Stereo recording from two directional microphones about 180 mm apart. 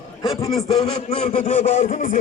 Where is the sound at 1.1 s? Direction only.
35° left (ahead or behind).